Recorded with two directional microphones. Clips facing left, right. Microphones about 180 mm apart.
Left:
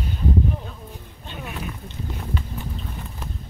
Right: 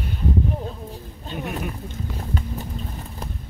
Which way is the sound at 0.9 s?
40° right (ahead or behind).